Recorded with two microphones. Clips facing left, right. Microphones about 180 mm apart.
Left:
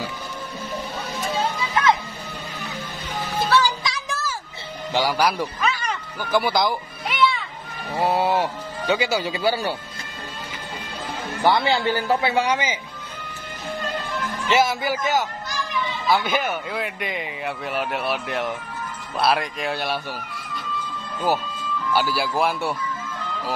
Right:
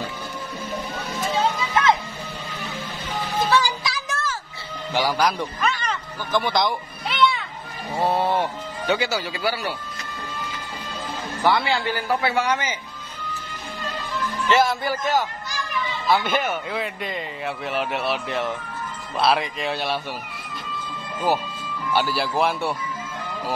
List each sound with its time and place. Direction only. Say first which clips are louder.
3.4 s music: left 2 dB; 5° right (ahead or behind)
4.9 s speech: left 1 dB; 10° left (ahead or behind)
11.4 s a man's voice: left 2 dB; 25° left (ahead or behind)
13.9 s music: left 1 dB; 55° left (ahead or behind)
14.5 s speech: even; 5° left (ahead or behind)
21.9 s speech: even; 5° left (ahead or behind)